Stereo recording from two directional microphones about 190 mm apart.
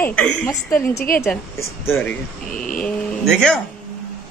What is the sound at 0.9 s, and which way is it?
Speech, 50° left (ahead or behind).